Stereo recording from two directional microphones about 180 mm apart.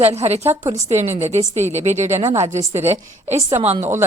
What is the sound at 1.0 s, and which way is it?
Speech, 15° right (ahead or behind).